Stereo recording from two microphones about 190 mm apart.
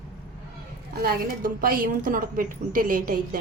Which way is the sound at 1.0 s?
50° right (ahead or behind).